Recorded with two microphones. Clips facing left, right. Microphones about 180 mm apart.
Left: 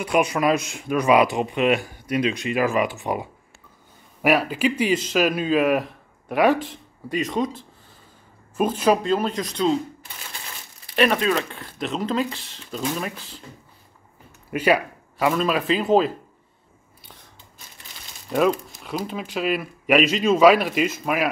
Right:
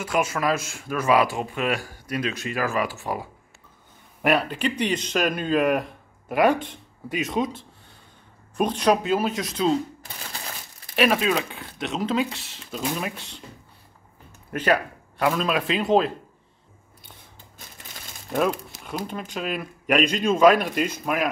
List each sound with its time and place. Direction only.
0.0 s speech: 15° left (ahead or behind)
4.2 s speech: 5° left (ahead or behind)
11.0 s speech: 5° right (ahead or behind)
14.5 s speech: 10° left (ahead or behind)
18.9 s speech: centre (ahead or behind)